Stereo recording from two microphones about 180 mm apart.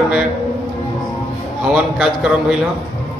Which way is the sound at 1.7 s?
5° right (ahead or behind).